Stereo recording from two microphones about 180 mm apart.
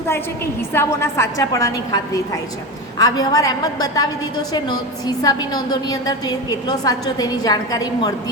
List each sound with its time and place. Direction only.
0.7 s a woman's voice: 15° left (ahead or behind)